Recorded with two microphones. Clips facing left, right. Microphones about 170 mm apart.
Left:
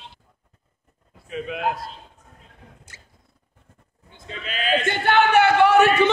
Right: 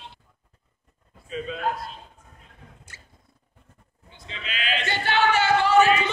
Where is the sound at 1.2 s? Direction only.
70° left (ahead or behind).